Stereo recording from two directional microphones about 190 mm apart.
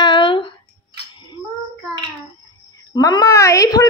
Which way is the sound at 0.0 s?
25° left (ahead or behind).